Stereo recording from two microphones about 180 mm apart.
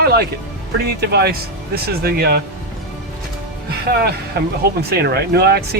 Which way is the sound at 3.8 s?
60° right (ahead or behind).